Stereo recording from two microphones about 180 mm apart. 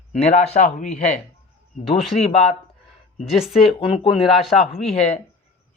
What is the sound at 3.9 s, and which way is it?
Speech, 30° left (ahead or behind).